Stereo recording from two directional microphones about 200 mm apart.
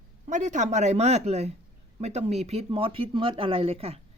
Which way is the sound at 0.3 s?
35° right (ahead or behind).